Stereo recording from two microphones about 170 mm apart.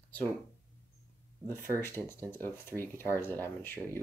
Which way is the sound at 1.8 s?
15° left (ahead or behind).